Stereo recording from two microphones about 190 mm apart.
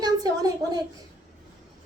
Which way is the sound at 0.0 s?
20° right (ahead or behind).